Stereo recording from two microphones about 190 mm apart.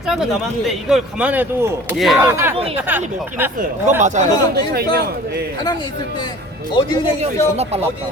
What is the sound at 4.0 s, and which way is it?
Speech, 40° right (ahead or behind).